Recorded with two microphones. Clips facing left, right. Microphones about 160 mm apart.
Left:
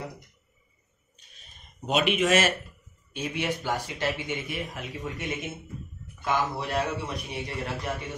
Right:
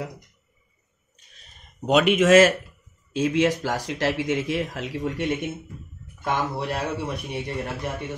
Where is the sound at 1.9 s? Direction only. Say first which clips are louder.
Right 7 dB; 75° right (ahead or behind).